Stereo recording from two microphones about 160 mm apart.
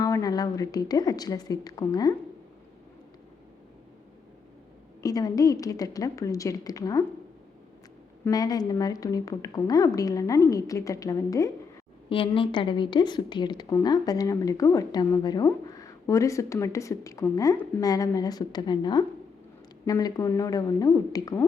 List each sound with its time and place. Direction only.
0.0 s a woman's voice: 20° left (ahead or behind)
5.0 s a woman's voice: 25° left (ahead or behind)
8.2 s a woman's voice: 25° left (ahead or behind)
12.0 s a woman's voice: 35° left (ahead or behind)